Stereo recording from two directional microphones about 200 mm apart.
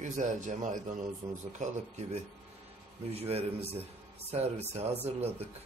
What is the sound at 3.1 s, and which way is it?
Speech, 30° right (ahead or behind).